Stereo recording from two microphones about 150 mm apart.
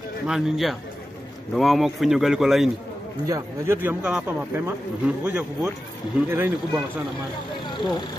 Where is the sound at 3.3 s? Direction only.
20° right (ahead or behind).